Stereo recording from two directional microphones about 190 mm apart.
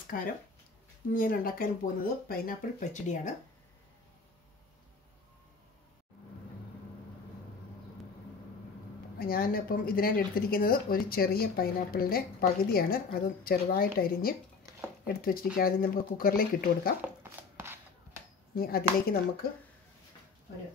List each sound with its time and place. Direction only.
0.1 s speech: 45° left (ahead or behind)
9.2 s speech: 50° left (ahead or behind)
15.5 s speech: 50° left (ahead or behind)
17.0 s a sound: 10° right (ahead or behind)
18.5 s speech: 50° left (ahead or behind)